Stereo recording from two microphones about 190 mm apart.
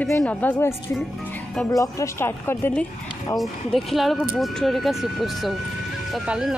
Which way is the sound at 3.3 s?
Centre (ahead or behind).